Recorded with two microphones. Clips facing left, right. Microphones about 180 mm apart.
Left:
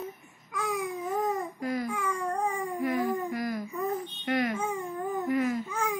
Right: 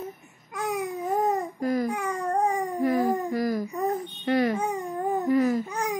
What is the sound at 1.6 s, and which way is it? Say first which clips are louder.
Babbling: right 5 dB; 40° right (ahead or behind).